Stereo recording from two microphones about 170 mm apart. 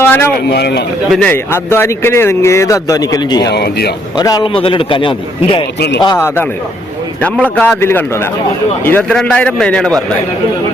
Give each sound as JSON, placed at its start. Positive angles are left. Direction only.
{"t": 0.0, "sound": "a sound", "side_deg": 15}
{"t": 0.5, "sound": "speech", "side_deg": 75}
{"t": 1.1, "sound": "speech", "side_deg": 10}
{"t": 3.5, "sound": "speech", "side_deg": 75}
{"t": 4.2, "sound": "a man's voice", "side_deg": 20}
{"t": 6.1, "sound": "speech", "side_deg": 15}
{"t": 7.4, "sound": "speech", "side_deg": 10}